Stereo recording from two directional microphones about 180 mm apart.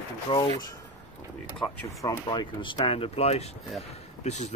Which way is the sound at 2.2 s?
25° left (ahead or behind).